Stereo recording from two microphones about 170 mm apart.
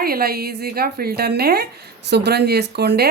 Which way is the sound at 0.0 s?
65° right (ahead or behind).